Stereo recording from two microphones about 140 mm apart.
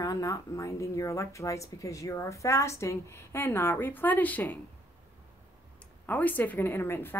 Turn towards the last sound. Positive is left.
turn(degrees=15)  # may be behind; listen again after turning